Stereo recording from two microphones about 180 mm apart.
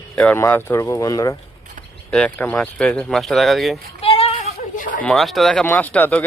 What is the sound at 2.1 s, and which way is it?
Speech, 5° left (ahead or behind).